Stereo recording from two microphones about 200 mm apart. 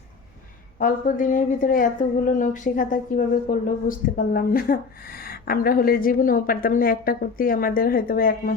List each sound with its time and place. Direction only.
0.8 s a woman's voice: 40° left (ahead or behind)